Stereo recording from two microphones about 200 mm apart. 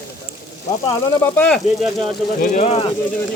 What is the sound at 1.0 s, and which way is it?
Speech, 10° left (ahead or behind).